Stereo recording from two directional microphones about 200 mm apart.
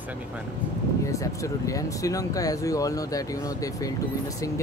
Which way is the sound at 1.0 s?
15° left (ahead or behind).